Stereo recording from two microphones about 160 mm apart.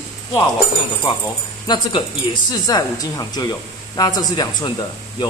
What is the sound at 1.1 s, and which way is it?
A man's voice, 30° left (ahead or behind).